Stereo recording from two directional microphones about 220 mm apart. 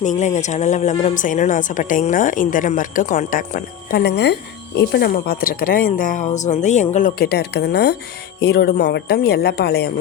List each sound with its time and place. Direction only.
0.0 s speech: 35° left (ahead or behind)